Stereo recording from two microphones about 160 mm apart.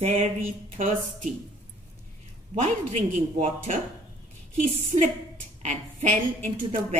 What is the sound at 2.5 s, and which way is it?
A woman's voice, 45° right (ahead or behind).